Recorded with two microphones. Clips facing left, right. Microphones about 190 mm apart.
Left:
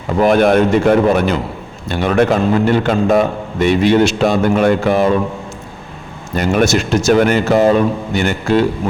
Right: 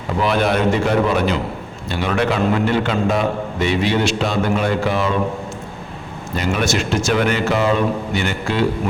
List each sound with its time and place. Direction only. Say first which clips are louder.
0.2 s a man's voice: left 7 dB; 50° left (ahead or behind)
6.3 s a man's voice: left 6 dB; 50° left (ahead or behind)